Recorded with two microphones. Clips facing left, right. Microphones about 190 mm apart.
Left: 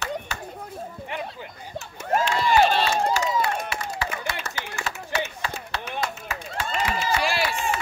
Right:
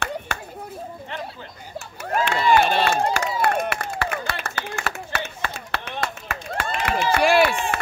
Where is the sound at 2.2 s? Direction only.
60° right (ahead or behind).